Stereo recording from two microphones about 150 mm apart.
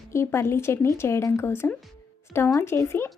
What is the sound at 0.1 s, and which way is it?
Speech, 15° left (ahead or behind).